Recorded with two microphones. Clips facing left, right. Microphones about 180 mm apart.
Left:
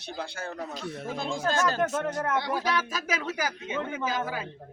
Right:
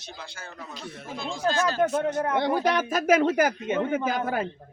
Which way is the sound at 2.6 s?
55° right (ahead or behind).